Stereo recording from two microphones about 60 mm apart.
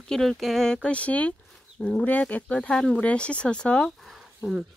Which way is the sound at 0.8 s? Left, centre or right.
Left.